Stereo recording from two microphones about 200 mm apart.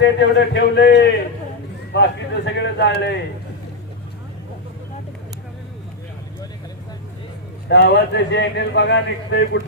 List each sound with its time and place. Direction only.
0.0 s a man's voice: 60° left (ahead or behind)
7.6 s a man's voice: 60° left (ahead or behind)